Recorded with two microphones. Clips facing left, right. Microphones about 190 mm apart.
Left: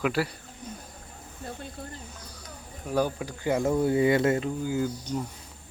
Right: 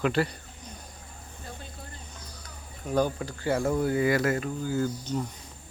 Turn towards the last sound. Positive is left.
turn(degrees=10)  # may be behind; listen again after turning